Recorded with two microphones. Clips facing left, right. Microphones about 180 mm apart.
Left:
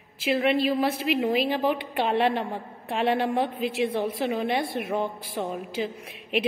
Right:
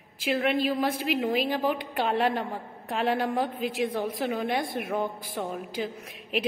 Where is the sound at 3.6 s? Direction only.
45° right (ahead or behind).